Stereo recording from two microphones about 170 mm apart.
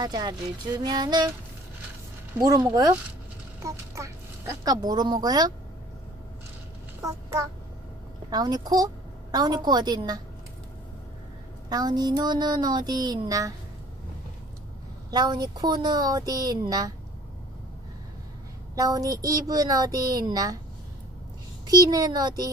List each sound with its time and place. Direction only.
0.0 s speech: 25° right (ahead or behind)
2.3 s speech: 20° right (ahead or behind)
7.0 s a child's voice: 20° right (ahead or behind)
11.7 s speech: 25° right (ahead or behind)
15.0 s speech: 25° right (ahead or behind)
18.8 s speech: 20° right (ahead or behind)
21.6 s speech: 20° right (ahead or behind)